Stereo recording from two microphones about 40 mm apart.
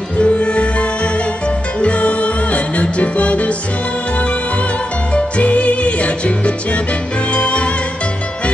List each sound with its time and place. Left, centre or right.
0.2 s music: left
5.4 s music: left